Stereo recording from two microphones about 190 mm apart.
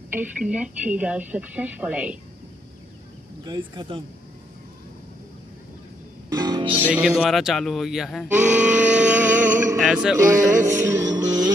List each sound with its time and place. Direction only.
0.1 s speech: 5° right (ahead or behind)
3.4 s speech: 25° right (ahead or behind)
6.3 s music: 20° right (ahead or behind)
6.9 s speech: 5° right (ahead or behind)
9.8 s mantra: centre (ahead or behind)
10.3 s music: 15° right (ahead or behind)